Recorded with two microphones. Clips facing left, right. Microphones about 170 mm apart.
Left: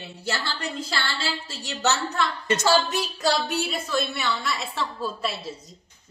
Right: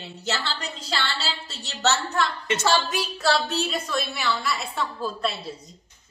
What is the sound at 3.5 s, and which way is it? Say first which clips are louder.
Speech: even; 10° left (ahead or behind).